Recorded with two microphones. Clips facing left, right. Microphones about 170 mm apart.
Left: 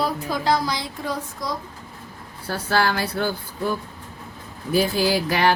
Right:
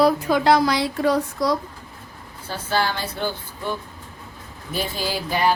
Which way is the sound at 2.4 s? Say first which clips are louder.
Left 2 dB; 65° left (ahead or behind).